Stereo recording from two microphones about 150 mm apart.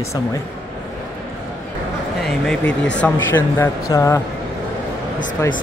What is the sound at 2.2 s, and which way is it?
Speech, centre (ahead or behind).